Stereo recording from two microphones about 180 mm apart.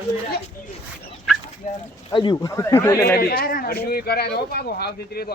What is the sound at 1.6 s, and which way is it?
Speech, 45° left (ahead or behind).